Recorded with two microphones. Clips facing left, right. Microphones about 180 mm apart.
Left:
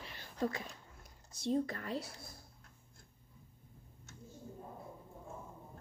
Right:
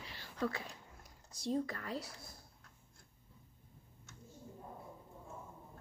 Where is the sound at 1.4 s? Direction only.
25° left (ahead or behind).